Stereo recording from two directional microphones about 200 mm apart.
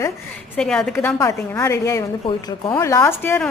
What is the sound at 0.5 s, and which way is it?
A woman's voice, 5° left (ahead or behind).